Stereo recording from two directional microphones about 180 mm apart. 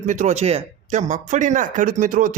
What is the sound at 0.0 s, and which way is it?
Speech, 40° right (ahead or behind).